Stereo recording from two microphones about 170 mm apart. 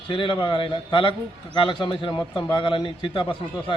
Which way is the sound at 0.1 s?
30° left (ahead or behind).